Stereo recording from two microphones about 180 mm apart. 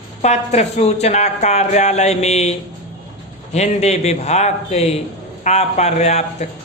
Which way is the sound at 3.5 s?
35° left (ahead or behind).